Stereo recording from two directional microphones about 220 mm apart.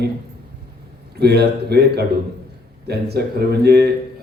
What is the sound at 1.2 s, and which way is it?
A man's voice, 45° right (ahead or behind).